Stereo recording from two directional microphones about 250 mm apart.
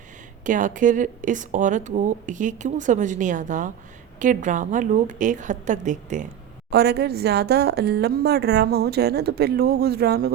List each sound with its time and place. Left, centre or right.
0.4 s a woman's voice: right
6.7 s speech: right